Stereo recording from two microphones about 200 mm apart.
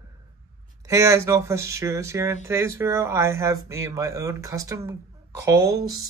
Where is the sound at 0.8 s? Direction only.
15° right (ahead or behind).